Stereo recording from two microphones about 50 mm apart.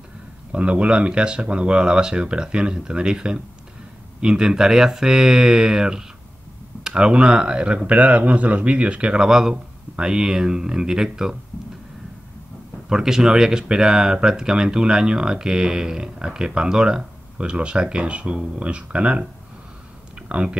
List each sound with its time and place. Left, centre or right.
0.5 s speech: right
12.9 s speech: centre
20.2 s a sound: right